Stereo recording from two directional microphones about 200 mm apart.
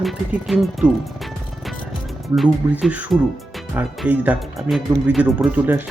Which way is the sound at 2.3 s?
5° right (ahead or behind).